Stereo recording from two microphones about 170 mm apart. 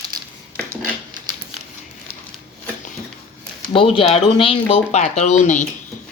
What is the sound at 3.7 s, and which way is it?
Speech, 30° left (ahead or behind).